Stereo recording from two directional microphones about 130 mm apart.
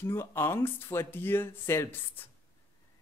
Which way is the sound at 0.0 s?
20° left (ahead or behind).